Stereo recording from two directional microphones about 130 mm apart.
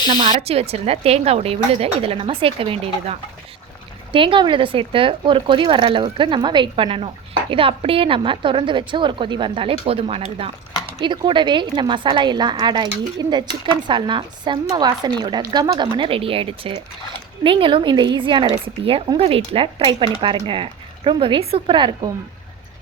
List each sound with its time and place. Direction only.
0.4 s a woman's voice: 50° right (ahead or behind)
9.8 s a woman's voice: 50° right (ahead or behind)
11.0 s a woman's voice: 40° right (ahead or behind)